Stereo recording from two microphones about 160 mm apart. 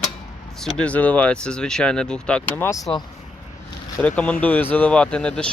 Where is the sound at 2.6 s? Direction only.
20° left (ahead or behind).